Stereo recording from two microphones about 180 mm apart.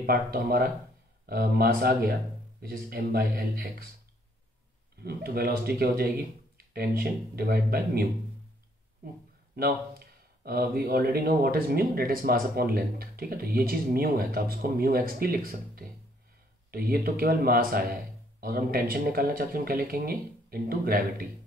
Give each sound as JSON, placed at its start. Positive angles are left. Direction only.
{"t": 0.0, "sound": "speech", "side_deg": -55}
{"t": 5.0, "sound": "speech", "side_deg": -60}
{"t": 9.6, "sound": "a sound", "side_deg": -60}
{"t": 10.8, "sound": "speech", "side_deg": -55}